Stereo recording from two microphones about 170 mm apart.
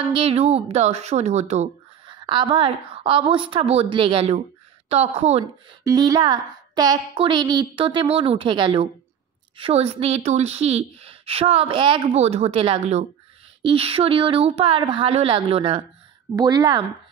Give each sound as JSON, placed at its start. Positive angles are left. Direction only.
{"t": 0.1, "sound": "a woman's voice", "side_deg": -35}
{"t": 2.0, "sound": "a woman's voice", "side_deg": -30}
{"t": 5.9, "sound": "a woman's voice", "side_deg": -20}